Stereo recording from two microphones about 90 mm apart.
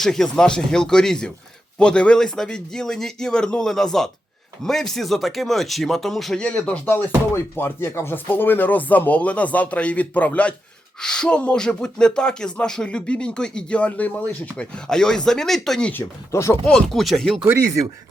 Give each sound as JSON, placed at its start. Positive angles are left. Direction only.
{"t": 0.0, "sound": "speech", "side_deg": 5}
{"t": 6.4, "sound": "speech", "side_deg": 15}
{"t": 16.3, "sound": "speech", "side_deg": 35}
{"t": 16.6, "sound": "speech", "side_deg": 5}